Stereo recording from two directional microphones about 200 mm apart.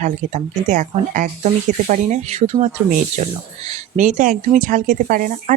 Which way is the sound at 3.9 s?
40° right (ahead or behind).